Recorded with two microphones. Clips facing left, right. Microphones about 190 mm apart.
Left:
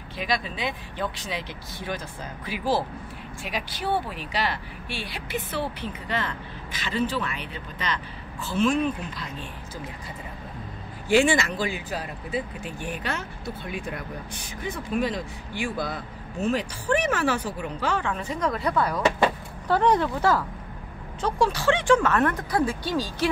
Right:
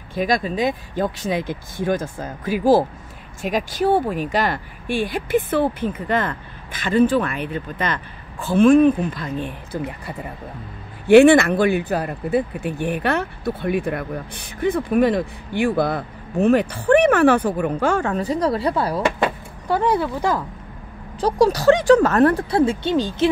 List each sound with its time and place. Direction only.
0.1 s speech: 45° right (ahead or behind)
19.7 s speech: 10° right (ahead or behind)
21.2 s speech: 35° right (ahead or behind); by 23.3 s 20° right (ahead or behind)